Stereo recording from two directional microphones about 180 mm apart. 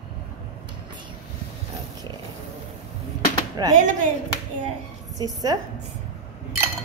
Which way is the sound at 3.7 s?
45° right (ahead or behind).